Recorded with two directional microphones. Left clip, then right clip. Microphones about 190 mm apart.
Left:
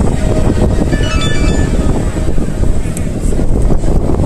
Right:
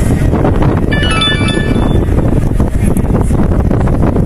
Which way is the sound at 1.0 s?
40° right (ahead or behind).